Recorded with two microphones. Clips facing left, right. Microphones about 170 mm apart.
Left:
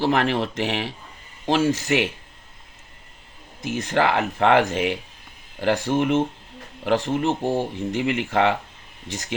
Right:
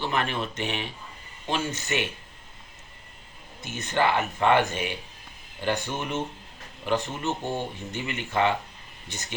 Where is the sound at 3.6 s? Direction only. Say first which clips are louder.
Left 4 dB; 90° left.